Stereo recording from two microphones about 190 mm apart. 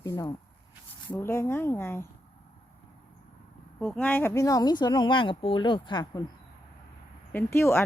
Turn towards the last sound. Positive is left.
turn(degrees=15)  # may be behind; listen again after turning